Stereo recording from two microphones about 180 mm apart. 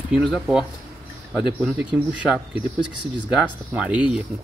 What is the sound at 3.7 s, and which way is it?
Speech, 5° right (ahead or behind).